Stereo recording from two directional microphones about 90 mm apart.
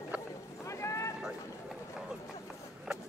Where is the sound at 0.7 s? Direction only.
35° left (ahead or behind).